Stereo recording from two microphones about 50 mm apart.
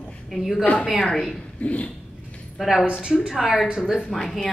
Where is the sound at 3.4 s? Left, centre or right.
Centre.